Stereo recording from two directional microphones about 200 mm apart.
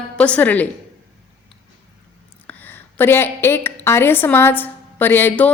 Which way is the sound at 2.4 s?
10° left (ahead or behind).